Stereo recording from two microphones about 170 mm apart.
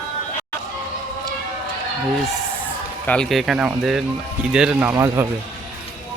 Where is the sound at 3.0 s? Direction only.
5° left (ahead or behind); by 5.3 s 15° right (ahead or behind).